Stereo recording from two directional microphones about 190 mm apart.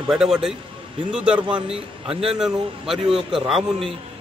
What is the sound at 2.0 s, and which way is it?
Speech, 30° right (ahead or behind).